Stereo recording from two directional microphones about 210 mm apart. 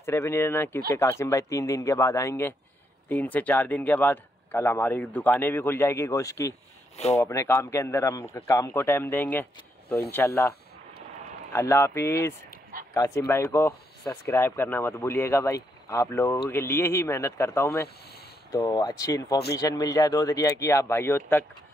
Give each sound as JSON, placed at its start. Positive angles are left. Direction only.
{"t": 0.0, "sound": "speech", "side_deg": 10}
{"t": 11.5, "sound": "speech", "side_deg": 10}
{"t": 19.3, "sound": "speech", "side_deg": 50}
{"t": 19.6, "sound": "speech", "side_deg": 15}